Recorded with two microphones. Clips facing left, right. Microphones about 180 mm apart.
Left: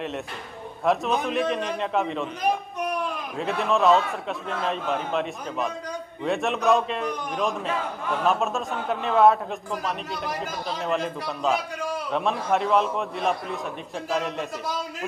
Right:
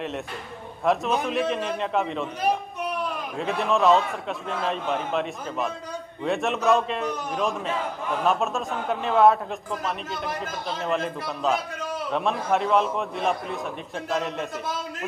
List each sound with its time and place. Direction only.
0.8 s a man's voice: centre (ahead or behind)
3.3 s a man's voice: centre (ahead or behind)